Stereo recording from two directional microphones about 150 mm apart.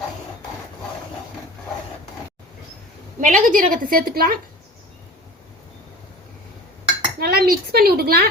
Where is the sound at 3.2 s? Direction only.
60° right (ahead or behind); by 4.4 s 75° right (ahead or behind).